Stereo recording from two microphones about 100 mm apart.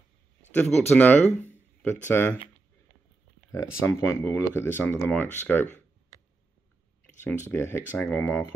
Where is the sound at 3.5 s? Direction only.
25° left (ahead or behind).